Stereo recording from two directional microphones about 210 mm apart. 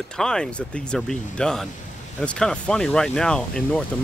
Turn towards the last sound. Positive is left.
turn(degrees=5)  # may be behind; listen again after turning